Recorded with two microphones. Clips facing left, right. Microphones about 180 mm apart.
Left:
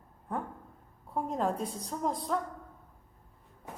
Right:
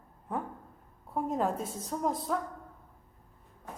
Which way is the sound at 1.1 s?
5° right (ahead or behind).